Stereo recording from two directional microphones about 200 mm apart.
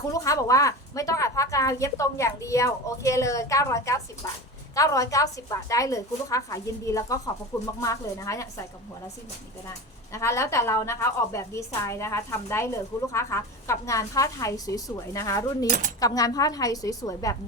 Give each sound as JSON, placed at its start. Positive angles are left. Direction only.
{"t": 0.1, "sound": "a woman's voice", "side_deg": 15}
{"t": 10.1, "sound": "a woman's voice", "side_deg": 15}